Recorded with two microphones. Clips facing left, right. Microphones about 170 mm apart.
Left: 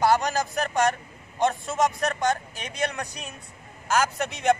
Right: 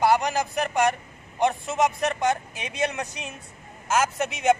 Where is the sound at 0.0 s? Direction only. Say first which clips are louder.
Right 1 dB; 15° right (ahead or behind).